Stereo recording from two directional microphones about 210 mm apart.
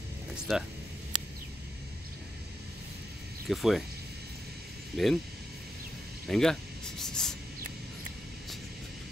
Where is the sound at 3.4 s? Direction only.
Centre (ahead or behind).